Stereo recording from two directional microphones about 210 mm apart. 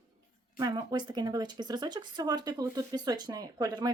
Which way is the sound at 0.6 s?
20° right (ahead or behind).